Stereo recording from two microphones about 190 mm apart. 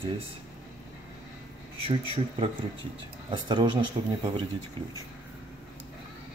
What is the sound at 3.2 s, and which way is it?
Speech, 25° right (ahead or behind).